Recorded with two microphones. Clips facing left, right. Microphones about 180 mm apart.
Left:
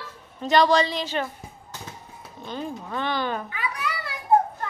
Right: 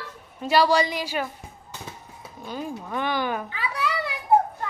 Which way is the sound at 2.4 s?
10° right (ahead or behind).